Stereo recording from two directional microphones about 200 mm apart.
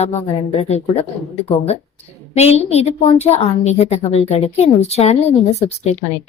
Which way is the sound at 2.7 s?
30° left (ahead or behind).